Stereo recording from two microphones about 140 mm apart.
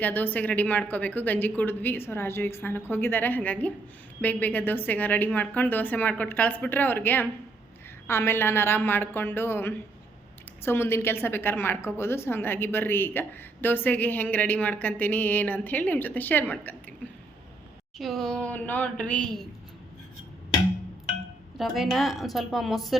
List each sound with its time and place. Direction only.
0.0 s a woman's voice: 15° left (ahead or behind)
17.9 s a woman's voice: centre (ahead or behind)
21.6 s speech: centre (ahead or behind)